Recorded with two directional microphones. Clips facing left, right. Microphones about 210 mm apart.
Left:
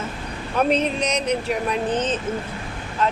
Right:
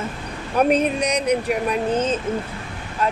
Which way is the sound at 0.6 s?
10° right (ahead or behind).